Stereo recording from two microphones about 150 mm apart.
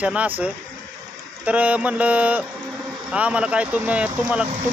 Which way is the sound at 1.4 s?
10° right (ahead or behind).